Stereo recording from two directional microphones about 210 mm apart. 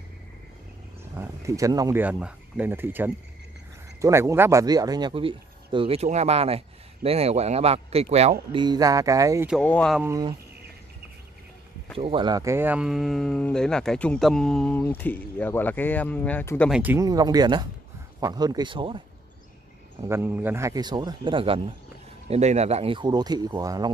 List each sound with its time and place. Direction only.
1.1 s speech: 10° right (ahead or behind)
9.6 s speech: 5° left (ahead or behind)
10.0 s speech: 15° right (ahead or behind)
12.0 s speech: 25° right (ahead or behind); by 16.7 s 10° left (ahead or behind)
16.7 s speech: 10° right (ahead or behind)
20.0 s speech: 10° right (ahead or behind)